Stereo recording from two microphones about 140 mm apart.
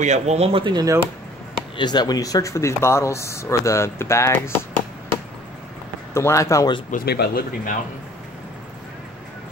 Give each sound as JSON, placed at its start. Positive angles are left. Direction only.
{"t": 0.0, "sound": "speech", "side_deg": -55}
{"t": 1.8, "sound": "speech", "side_deg": 30}
{"t": 6.1, "sound": "speech", "side_deg": 20}
{"t": 6.9, "sound": "speech", "side_deg": 75}